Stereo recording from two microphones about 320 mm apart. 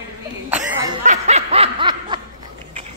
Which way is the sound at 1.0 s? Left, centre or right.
Right.